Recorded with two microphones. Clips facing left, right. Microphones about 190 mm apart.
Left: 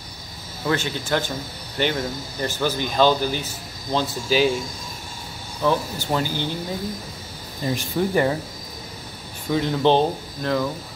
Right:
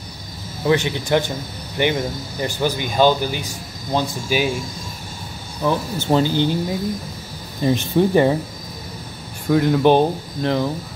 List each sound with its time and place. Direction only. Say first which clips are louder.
0.7 s speech: right 5 dB; 15° right (ahead or behind)
5.6 s speech: right 2 dB; 15° right (ahead or behind)
7.6 s speech: right 6 dB; 20° right (ahead or behind)
9.5 s speech: right 4 dB; 10° right (ahead or behind)